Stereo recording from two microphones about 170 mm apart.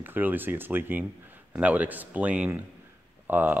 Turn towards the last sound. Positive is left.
turn(degrees=-10)  # may be behind; listen again after turning